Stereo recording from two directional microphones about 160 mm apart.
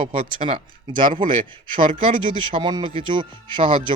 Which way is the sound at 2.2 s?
30° right (ahead or behind).